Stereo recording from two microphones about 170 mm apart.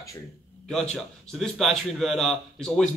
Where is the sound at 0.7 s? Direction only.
5° left (ahead or behind).